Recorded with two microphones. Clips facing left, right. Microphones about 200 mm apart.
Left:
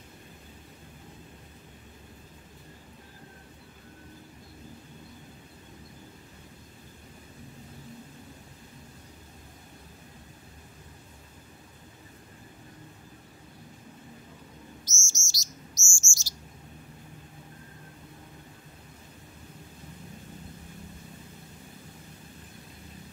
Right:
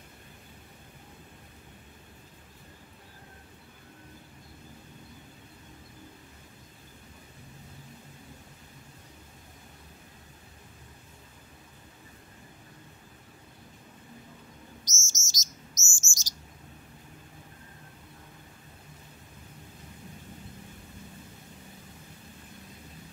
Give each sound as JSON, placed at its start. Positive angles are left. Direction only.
{"t": 14.9, "sound": "chirp", "side_deg": -20}